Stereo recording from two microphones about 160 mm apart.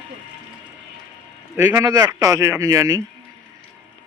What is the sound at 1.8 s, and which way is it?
A man's voice, 25° right (ahead or behind).